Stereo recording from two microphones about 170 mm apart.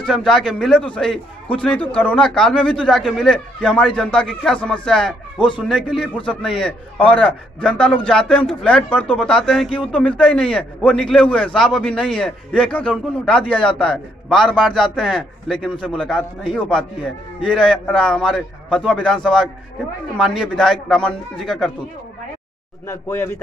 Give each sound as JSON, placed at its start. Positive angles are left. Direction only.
{"t": 0.0, "sound": "a man's voice", "side_deg": 0}
{"t": 22.8, "sound": "speech", "side_deg": 15}